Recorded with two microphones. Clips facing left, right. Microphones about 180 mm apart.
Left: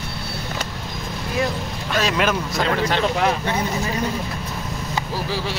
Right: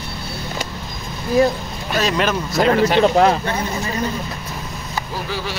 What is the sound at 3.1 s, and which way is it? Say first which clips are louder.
Speech: right 6 dB; 40° right (ahead or behind).